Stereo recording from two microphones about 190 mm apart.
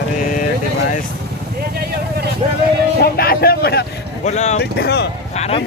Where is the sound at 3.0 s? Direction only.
55° left (ahead or behind).